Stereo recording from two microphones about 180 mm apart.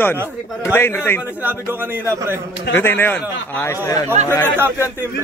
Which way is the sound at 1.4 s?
10° right (ahead or behind).